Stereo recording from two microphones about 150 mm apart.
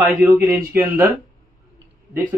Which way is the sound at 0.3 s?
20° right (ahead or behind).